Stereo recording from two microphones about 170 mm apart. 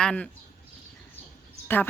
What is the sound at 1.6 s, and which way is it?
Speech, 10° left (ahead or behind).